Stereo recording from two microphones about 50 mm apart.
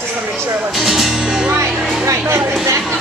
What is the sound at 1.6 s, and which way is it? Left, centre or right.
Music, right.